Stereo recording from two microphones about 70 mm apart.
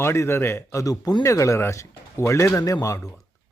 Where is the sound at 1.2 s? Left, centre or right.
Left.